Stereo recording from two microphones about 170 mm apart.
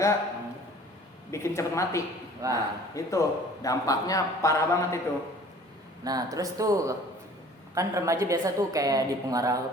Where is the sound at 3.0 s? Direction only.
20° left (ahead or behind).